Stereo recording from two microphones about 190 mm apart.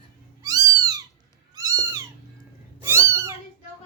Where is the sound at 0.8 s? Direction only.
20° right (ahead or behind).